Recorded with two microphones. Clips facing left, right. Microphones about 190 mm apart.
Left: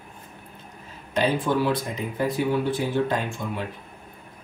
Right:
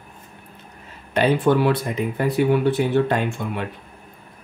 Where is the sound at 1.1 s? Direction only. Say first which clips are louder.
Right 5 dB; 65° right (ahead or behind).